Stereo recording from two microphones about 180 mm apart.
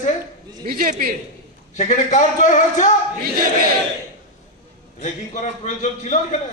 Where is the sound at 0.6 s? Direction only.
50° right (ahead or behind).